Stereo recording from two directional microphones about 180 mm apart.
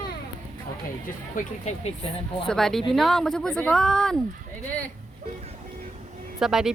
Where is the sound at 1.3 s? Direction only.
40° left (ahead or behind).